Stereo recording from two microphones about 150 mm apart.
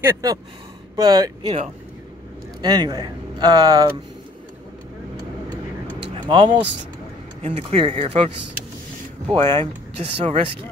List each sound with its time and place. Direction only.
0.0 s speech: 25° right (ahead or behind)
2.6 s speech: 25° right (ahead or behind)
6.1 s speech: 35° right (ahead or behind)
9.6 s speech: 40° right (ahead or behind)